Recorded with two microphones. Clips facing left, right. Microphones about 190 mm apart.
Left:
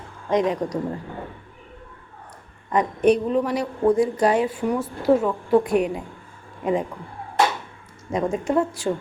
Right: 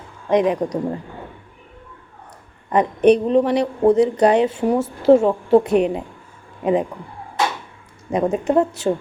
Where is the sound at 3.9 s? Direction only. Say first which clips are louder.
Right 4 dB; 70° right (ahead or behind).